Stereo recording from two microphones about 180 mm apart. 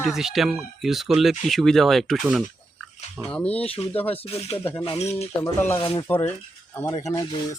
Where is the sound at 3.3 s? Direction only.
5° left (ahead or behind).